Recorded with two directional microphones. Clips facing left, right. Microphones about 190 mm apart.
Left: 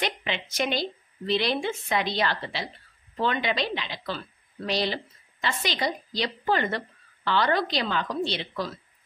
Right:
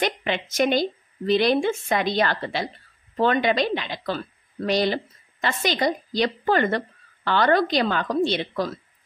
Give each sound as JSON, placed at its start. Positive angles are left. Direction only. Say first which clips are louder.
{"t": 0.0, "sound": "a woman's voice", "louder": "right 5 dB", "side_deg": -50}